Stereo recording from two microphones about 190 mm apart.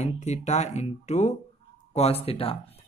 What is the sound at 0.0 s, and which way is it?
Speech, 35° left (ahead or behind).